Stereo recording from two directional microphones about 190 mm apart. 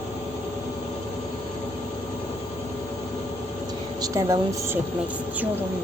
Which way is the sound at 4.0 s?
20° right (ahead or behind).